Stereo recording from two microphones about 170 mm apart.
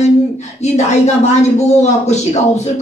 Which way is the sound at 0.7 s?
40° left (ahead or behind).